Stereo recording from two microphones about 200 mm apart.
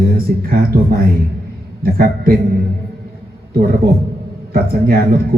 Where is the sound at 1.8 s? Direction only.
45° right (ahead or behind).